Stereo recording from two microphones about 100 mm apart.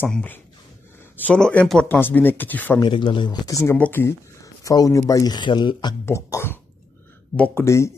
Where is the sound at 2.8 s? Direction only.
55° left (ahead or behind).